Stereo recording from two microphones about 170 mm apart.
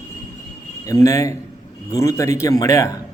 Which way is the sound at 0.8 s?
20° left (ahead or behind).